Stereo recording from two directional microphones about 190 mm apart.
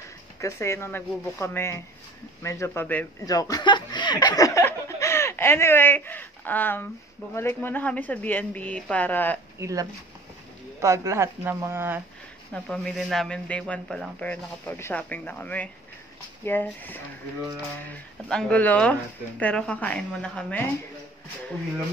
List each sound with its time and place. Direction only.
0.4 s speech: 15° left (ahead or behind)
9.6 s speech: 15° right (ahead or behind)
12.6 s speech: centre (ahead or behind)
18.3 s speech: 5° left (ahead or behind)